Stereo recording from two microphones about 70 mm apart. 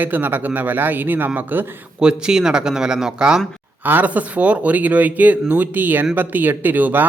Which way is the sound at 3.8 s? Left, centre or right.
Right.